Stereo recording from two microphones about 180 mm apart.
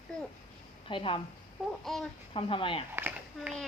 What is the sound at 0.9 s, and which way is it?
Speech, 30° left (ahead or behind).